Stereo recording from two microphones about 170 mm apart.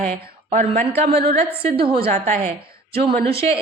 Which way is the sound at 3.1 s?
65° right (ahead or behind).